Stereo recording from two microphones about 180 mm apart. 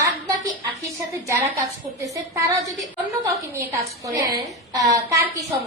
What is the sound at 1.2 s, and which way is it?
A woman's voice, 15° right (ahead or behind).